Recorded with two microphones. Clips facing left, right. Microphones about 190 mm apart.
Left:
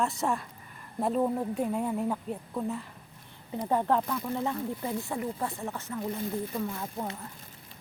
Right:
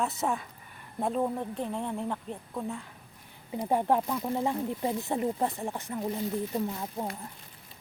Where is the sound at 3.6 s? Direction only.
15° right (ahead or behind).